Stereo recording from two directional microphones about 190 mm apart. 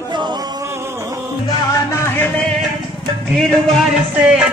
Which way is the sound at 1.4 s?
15° left (ahead or behind).